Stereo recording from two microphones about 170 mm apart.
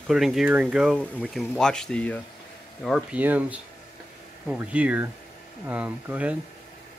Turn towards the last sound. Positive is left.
turn(degrees=-10)  # may be behind; listen again after turning